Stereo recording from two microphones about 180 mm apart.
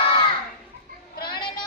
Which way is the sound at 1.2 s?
25° left (ahead or behind).